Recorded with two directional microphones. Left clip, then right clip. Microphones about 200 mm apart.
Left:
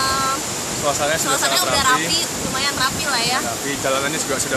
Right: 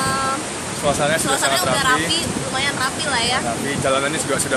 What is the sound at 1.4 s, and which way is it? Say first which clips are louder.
Speech: even; 10° left (ahead or behind).